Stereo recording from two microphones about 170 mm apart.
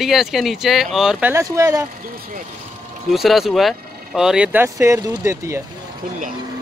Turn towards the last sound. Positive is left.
turn(degrees=-15)  # may be behind; listen again after turning